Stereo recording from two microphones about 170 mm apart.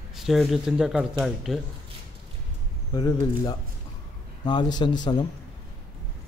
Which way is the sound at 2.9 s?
25° left (ahead or behind).